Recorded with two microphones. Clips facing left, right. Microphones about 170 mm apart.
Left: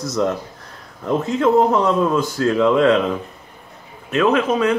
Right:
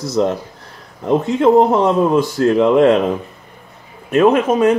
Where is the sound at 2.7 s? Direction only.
45° right (ahead or behind).